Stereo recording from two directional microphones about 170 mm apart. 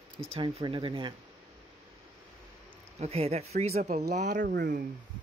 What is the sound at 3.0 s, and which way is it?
Speech, 40° right (ahead or behind).